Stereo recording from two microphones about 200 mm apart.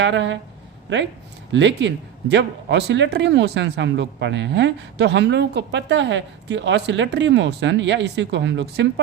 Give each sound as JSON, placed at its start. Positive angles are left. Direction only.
{"t": 0.0, "sound": "speech", "side_deg": -65}
{"t": 1.5, "sound": "speech", "side_deg": -65}